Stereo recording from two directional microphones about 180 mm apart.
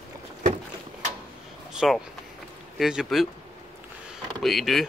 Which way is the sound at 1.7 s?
Centre (ahead or behind).